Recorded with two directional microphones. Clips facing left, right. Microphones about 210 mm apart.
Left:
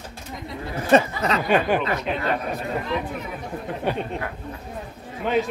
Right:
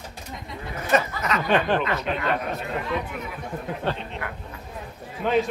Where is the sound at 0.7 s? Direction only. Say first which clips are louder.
Left 5 dB; 30° left (ahead or behind).